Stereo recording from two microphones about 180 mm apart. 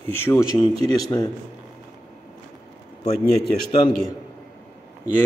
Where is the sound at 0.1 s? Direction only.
15° left (ahead or behind).